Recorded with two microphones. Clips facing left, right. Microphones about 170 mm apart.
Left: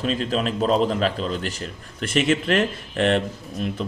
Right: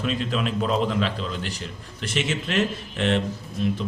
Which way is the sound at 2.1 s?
55° left (ahead or behind).